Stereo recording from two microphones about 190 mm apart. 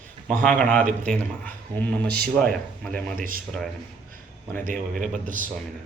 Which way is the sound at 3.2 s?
50° right (ahead or behind).